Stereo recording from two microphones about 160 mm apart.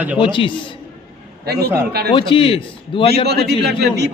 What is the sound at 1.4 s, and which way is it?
Speech, 80° right.